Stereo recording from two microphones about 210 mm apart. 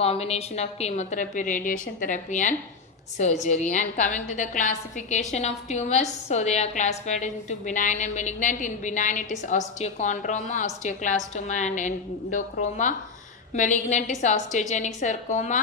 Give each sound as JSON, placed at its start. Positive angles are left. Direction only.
{"t": 0.0, "sound": "a woman's voice", "side_deg": 30}